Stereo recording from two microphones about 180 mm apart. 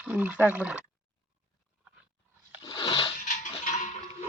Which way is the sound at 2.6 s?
30° left (ahead or behind).